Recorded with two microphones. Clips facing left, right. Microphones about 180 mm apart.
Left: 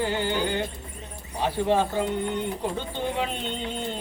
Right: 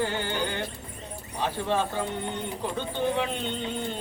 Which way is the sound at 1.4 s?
15° left (ahead or behind).